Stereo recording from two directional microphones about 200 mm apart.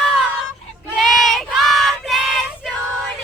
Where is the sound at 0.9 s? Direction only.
Centre (ahead or behind).